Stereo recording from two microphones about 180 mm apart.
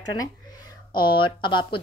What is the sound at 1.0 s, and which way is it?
Speech, 25° left (ahead or behind).